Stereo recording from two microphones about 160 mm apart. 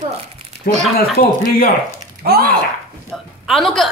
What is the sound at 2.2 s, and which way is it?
Speech, 80° right.